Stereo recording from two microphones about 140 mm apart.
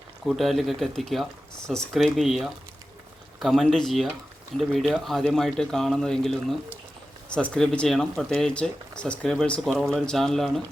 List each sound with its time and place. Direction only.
0.3 s speech: centre (ahead or behind)